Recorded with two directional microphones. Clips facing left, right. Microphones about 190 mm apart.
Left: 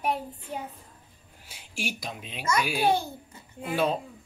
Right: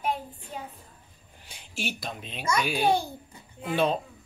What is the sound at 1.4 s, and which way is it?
Speech, 5° left (ahead or behind).